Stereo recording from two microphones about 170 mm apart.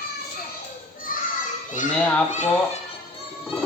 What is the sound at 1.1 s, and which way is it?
Children playing, 55° left (ahead or behind).